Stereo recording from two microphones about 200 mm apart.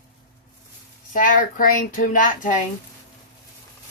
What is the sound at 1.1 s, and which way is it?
Speech, 40° left (ahead or behind).